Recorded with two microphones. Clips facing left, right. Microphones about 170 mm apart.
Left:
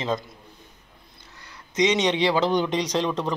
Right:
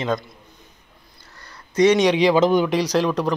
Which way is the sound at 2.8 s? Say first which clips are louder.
Right 5 dB; 25° left (ahead or behind).